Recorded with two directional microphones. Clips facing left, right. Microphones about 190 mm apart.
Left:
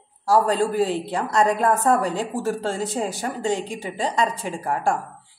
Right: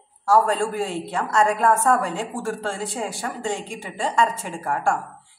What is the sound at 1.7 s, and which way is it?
Speech, 20° left (ahead or behind).